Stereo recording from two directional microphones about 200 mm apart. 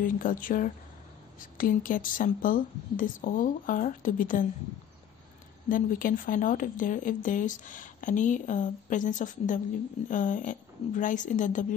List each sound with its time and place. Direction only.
0.0 s speech: 45° left (ahead or behind)
5.7 s speech: 45° left (ahead or behind)